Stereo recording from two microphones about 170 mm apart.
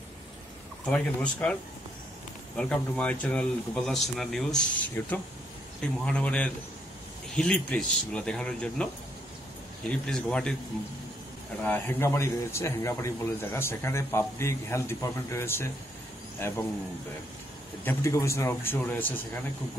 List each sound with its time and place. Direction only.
0.8 s a man's voice: 5° left (ahead or behind)
9.8 s speech: 5° left (ahead or behind)
11.6 s a man's voice: 10° left (ahead or behind)
17.8 s a man's voice: 15° left (ahead or behind)